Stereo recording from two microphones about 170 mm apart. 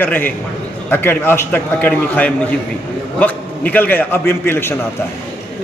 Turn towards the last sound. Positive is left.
turn(degrees=15)  # may be behind; listen again after turning